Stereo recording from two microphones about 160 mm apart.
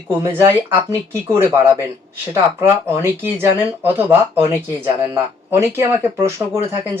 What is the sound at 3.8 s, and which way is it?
Speech, 10° right (ahead or behind).